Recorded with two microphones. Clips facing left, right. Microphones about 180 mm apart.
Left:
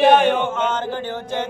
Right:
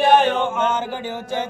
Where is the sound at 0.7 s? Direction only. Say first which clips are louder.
Even; 10° right (ahead or behind).